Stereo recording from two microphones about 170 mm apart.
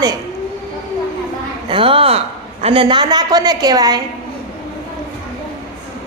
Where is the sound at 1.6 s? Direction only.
30° right (ahead or behind).